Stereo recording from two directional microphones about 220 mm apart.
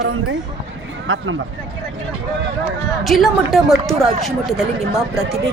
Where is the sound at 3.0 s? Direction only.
Centre (ahead or behind).